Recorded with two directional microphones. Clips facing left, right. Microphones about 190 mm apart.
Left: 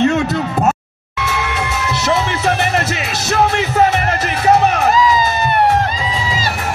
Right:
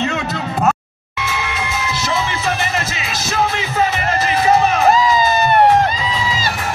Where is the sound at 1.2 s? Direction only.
70° left (ahead or behind).